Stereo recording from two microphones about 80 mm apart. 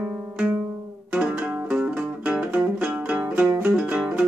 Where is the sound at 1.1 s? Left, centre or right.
Centre.